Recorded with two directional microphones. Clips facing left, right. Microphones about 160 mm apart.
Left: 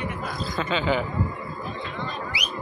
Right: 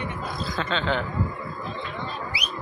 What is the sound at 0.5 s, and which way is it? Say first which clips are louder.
Speech: left 2 dB; 5° left (ahead or behind).